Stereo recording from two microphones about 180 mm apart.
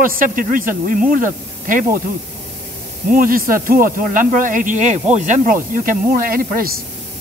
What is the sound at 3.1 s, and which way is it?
Speech, 50° right (ahead or behind).